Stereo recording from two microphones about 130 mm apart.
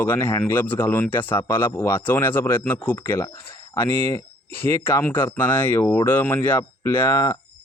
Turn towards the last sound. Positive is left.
turn(degrees=20)  # may be behind; listen again after turning